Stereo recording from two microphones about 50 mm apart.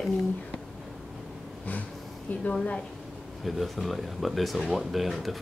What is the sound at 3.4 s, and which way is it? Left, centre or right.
Speech, centre.